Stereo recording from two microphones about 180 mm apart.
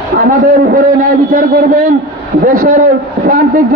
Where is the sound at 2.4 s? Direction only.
45° right (ahead or behind).